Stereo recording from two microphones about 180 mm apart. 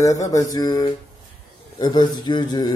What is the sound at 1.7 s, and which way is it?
Speech, 25° left (ahead or behind).